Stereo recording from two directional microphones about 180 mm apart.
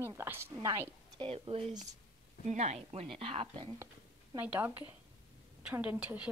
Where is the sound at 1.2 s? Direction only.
35° right (ahead or behind).